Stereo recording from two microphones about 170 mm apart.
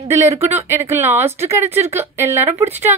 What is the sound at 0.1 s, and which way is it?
A woman's voice, 15° right (ahead or behind).